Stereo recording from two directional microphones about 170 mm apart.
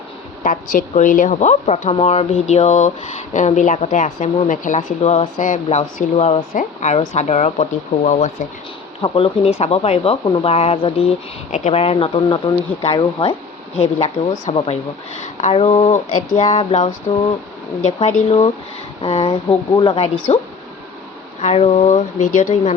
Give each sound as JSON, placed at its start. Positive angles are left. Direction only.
{"t": 0.4, "sound": "speech", "side_deg": 50}
{"t": 9.0, "sound": "speech", "side_deg": 30}
{"t": 20.3, "sound": "speech", "side_deg": 40}